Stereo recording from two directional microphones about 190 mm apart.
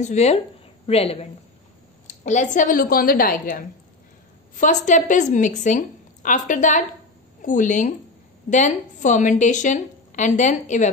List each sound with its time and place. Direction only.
0.0 s a woman's voice: 35° left (ahead or behind)